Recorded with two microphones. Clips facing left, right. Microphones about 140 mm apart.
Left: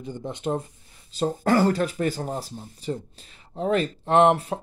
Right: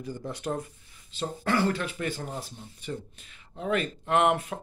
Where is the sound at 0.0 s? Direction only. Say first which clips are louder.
Left 4 dB; 20° left (ahead or behind).